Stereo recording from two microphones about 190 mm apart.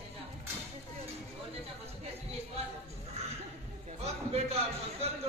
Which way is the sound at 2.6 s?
35° right (ahead or behind).